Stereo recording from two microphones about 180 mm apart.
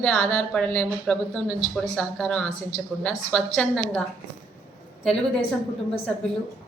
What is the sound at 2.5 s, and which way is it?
Speech, 40° left (ahead or behind).